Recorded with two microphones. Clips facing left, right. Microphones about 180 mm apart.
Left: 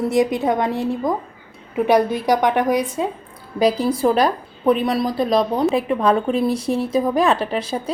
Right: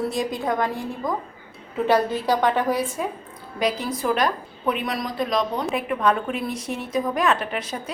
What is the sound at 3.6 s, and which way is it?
A woman's voice, 35° left (ahead or behind).